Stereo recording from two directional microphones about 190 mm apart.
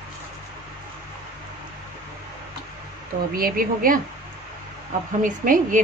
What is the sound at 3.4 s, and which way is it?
Speech, 50° right (ahead or behind).